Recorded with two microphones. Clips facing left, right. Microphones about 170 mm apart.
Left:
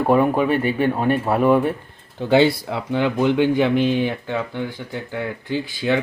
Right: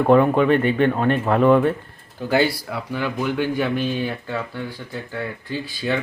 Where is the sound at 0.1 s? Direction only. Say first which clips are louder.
Right 2 dB; 10° left (ahead or behind).